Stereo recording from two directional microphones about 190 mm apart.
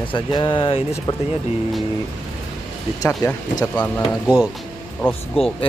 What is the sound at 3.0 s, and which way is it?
Speech, 20° left (ahead or behind).